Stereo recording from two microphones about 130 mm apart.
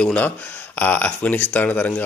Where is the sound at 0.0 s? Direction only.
10° left (ahead or behind).